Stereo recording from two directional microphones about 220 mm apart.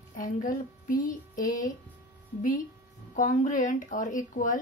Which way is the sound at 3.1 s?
35° left (ahead or behind).